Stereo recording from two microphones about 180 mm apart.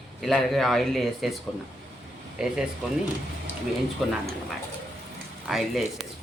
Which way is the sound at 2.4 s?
5° right (ahead or behind).